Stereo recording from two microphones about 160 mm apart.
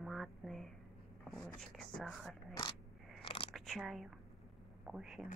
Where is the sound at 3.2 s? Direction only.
35° left (ahead or behind).